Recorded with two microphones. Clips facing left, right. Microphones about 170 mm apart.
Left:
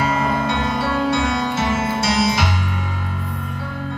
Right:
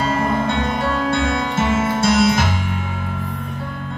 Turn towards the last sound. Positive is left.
turn(degrees=-55)  # may be behind; listen again after turning